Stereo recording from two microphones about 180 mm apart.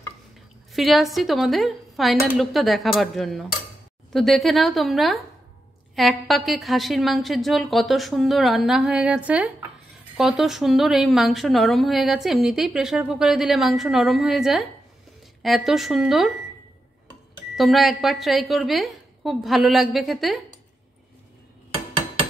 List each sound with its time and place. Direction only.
0.7 s a woman's voice: centre (ahead or behind)
17.6 s a woman's voice: centre (ahead or behind)